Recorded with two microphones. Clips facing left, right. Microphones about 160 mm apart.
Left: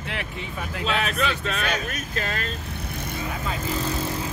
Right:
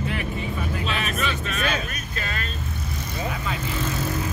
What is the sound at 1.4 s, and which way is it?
Speech, 75° left (ahead or behind).